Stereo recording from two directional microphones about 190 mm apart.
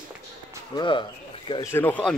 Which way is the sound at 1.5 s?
15° left (ahead or behind).